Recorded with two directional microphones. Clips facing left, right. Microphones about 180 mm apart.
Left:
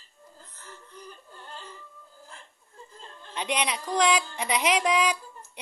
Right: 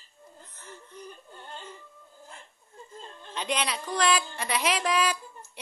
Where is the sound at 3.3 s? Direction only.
15° left (ahead or behind).